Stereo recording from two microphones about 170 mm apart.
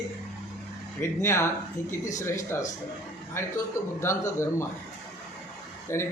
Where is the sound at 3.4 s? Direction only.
15° left (ahead or behind).